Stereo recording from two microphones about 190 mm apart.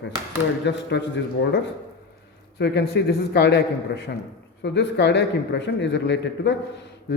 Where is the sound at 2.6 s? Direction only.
60° left (ahead or behind).